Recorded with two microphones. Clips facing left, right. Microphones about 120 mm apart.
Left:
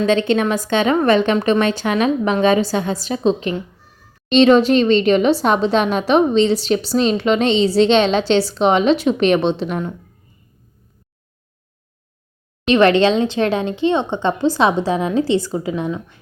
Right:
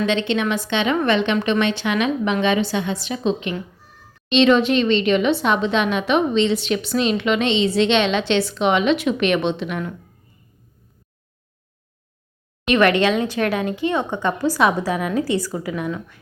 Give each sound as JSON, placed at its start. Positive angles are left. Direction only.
{"t": 0.0, "sound": "a woman's voice", "side_deg": 40}
{"t": 12.6, "sound": "speech", "side_deg": 30}